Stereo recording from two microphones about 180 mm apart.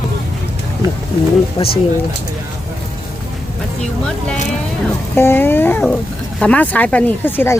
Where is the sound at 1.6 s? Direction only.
30° left (ahead or behind).